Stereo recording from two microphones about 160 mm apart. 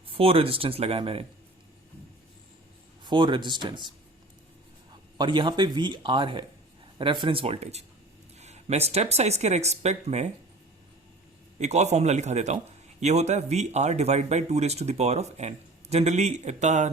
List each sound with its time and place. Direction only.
0.1 s speech: 35° right (ahead or behind)
3.0 s speech: 30° right (ahead or behind)
5.1 s speech: 30° right (ahead or behind)
8.4 s a sound: 45° right (ahead or behind)
8.9 s speech: 40° right (ahead or behind)
11.6 s speech: 45° right (ahead or behind)